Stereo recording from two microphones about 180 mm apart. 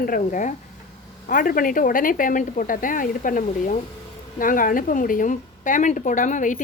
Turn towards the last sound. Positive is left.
turn(degrees=45)  # may be behind; listen again after turning